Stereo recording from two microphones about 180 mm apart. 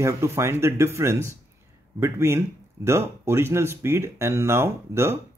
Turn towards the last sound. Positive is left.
turn(degrees=-15)  # may be behind; listen again after turning